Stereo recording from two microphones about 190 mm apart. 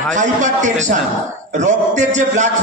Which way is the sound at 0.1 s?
40° right (ahead or behind).